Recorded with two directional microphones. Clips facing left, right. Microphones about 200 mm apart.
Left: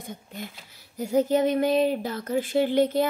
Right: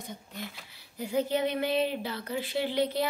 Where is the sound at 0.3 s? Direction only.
45° left (ahead or behind).